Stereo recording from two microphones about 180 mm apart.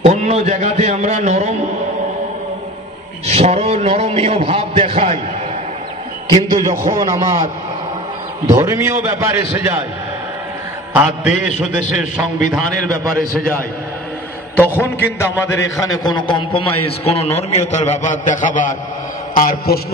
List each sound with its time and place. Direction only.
0.0 s a man's voice: 40° right (ahead or behind)
3.3 s a man's voice: 35° right (ahead or behind)
6.3 s a man's voice: 20° right (ahead or behind)
8.5 s a man's voice: 15° right (ahead or behind)
10.9 s a man's voice: 10° right (ahead or behind)
14.6 s a man's voice: 10° left (ahead or behind)
16.0 s a man's voice: 25° left (ahead or behind); by 19.8 s 55° left (ahead or behind)